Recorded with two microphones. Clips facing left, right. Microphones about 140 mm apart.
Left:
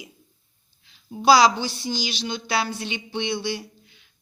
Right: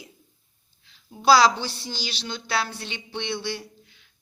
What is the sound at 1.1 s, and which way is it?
A woman's voice, 15° left (ahead or behind).